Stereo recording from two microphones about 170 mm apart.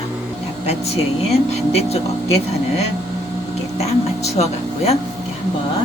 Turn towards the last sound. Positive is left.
turn(degrees=40)  # may be behind; listen again after turning